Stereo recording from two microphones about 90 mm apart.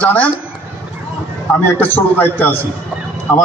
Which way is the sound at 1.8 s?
20° left (ahead or behind).